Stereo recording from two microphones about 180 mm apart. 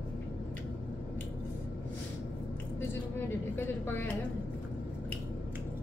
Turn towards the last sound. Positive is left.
turn(degrees=10)  # may be behind; listen again after turning